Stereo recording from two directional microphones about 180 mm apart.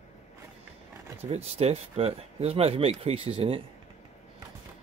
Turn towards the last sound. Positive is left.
turn(degrees=-30)  # may be behind; listen again after turning